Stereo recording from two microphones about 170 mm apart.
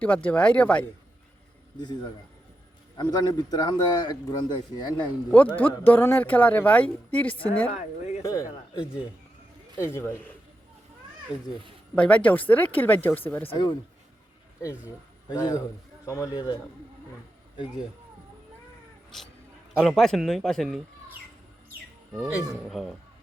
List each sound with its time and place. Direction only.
0.0 s a woman's voice: 10° left (ahead or behind)
3.0 s speech: 25° left (ahead or behind)
5.3 s a woman's voice: 10° left (ahead or behind)
7.7 s speech: 40° left (ahead or behind)
8.2 s speech: 20° left (ahead or behind)
9.7 s a woman's voice: 15° left (ahead or behind)
11.9 s a woman's voice: 5° left (ahead or behind)
13.5 s speech: 25° left (ahead or behind)
15.3 s speech: 20° left (ahead or behind)
19.8 s speech: centre (ahead or behind)